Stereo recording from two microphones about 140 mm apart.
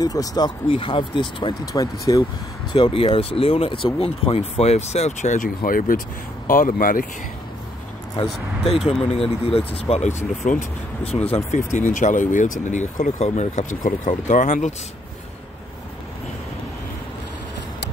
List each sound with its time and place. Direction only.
0.0 s speech: 25° left (ahead or behind)
0.7 s speech: 40° left (ahead or behind)
2.7 s speech: 35° left (ahead or behind); by 7.1 s 85° left
8.2 s speech: 45° left (ahead or behind)
11.1 s speech: 45° left (ahead or behind); by 14.7 s 70° left (ahead or behind)